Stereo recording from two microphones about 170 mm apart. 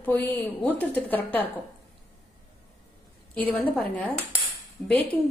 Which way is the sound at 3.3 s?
10° left (ahead or behind).